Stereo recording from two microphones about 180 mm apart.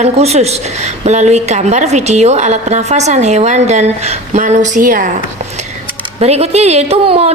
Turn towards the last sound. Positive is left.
turn(degrees=-35)  # may be behind; listen again after turning